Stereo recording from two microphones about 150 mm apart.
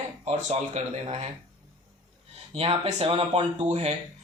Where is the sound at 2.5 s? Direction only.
40° right (ahead or behind).